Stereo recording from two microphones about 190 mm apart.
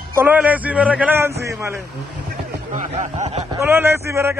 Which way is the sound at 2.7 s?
40° right (ahead or behind).